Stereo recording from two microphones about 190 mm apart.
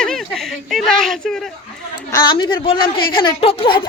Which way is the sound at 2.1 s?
20° left (ahead or behind).